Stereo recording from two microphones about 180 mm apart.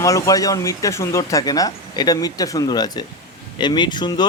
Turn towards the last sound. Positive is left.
turn(degrees=25)  # may be behind; listen again after turning